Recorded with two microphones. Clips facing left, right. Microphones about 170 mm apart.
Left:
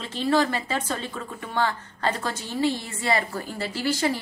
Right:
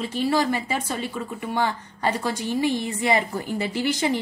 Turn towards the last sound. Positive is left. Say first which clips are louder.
# right 2 dB
turn(degrees=-20)  # may be behind; listen again after turning